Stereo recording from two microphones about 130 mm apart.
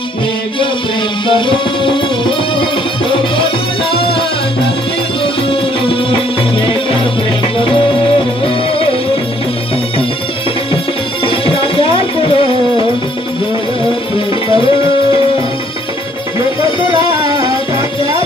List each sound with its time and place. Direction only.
1.2 s music: 40° left (ahead or behind)
5.2 s music: 40° left (ahead or behind)
7.5 s music: 40° left (ahead or behind)
11.2 s music: 40° left (ahead or behind)
14.1 s music: 40° left (ahead or behind)